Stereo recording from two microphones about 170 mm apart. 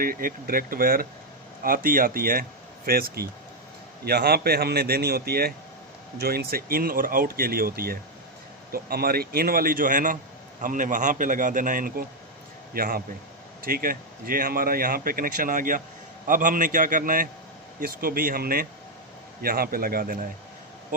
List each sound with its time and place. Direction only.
0.0 s a man's voice: 55° right (ahead or behind)